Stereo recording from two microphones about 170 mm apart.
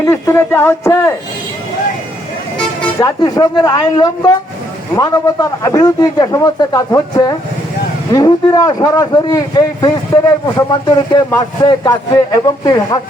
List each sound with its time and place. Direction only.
0.0 s speech: 15° left (ahead or behind)
3.0 s a man's voice: 20° left (ahead or behind)